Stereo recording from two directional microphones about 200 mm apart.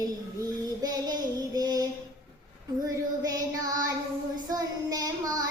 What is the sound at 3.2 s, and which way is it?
Child singing, 20° right (ahead or behind).